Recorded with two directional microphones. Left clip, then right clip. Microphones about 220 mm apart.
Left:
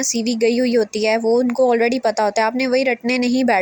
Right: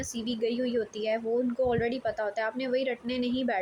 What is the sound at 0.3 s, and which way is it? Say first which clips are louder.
Speech: left 12 dB; 35° left (ahead or behind).